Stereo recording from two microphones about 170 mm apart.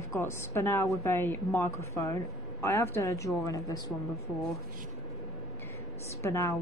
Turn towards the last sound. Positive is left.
turn(degrees=15)  # may be behind; listen again after turning